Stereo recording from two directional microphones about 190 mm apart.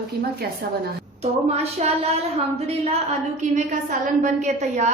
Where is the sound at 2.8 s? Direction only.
35° right (ahead or behind).